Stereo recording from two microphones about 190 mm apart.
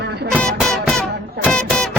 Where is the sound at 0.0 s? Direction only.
60° right (ahead or behind).